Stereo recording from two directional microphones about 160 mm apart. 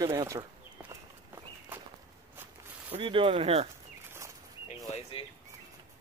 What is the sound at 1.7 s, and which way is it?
Walk, 10° right (ahead or behind).